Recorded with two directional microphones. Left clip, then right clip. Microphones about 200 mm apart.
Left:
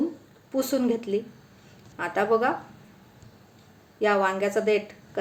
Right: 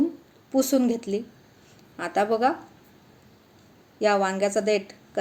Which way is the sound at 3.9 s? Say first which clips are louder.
Right 1 dB; 40° right (ahead or behind).